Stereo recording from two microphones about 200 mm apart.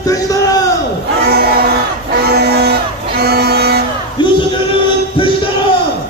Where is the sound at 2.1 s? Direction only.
50° right (ahead or behind).